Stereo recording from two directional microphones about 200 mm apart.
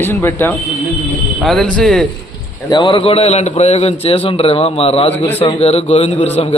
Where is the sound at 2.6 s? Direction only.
25° left (ahead or behind).